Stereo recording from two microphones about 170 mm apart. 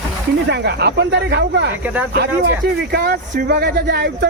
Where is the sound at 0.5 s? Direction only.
75° right (ahead or behind).